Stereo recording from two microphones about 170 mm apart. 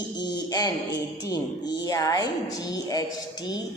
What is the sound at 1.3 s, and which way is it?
A woman's voice, 20° left (ahead or behind).